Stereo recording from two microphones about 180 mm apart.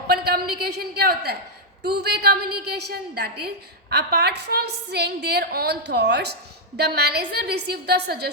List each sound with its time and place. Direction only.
0.1 s a woman's voice: 60° right (ahead or behind)